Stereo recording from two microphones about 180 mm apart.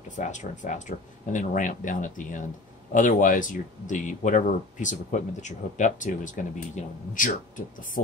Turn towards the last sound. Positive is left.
turn(degrees=45)  # may be behind; listen again after turning